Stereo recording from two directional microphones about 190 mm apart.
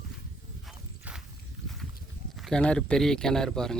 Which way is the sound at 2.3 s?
Centre (ahead or behind).